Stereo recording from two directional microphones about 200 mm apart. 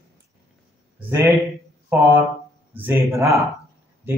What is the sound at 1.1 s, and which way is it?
Speech, 15° right (ahead or behind).